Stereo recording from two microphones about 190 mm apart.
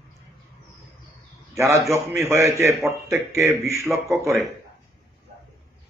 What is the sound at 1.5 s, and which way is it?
A man's voice, 15° right (ahead or behind).